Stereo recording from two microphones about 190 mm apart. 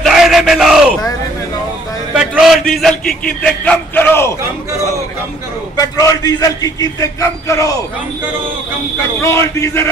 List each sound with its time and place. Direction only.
0.0 s yell: centre (ahead or behind)
2.1 s a sound: 5° right (ahead or behind)
2.7 s a man's voice: centre (ahead or behind)
5.8 s a man's voice: 20° left (ahead or behind)
9.2 s a man's voice: 15° left (ahead or behind)